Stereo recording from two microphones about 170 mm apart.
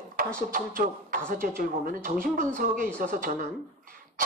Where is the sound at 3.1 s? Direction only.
55° right (ahead or behind).